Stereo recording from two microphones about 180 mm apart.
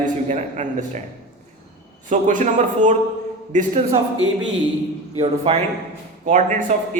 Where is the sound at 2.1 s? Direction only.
45° right (ahead or behind).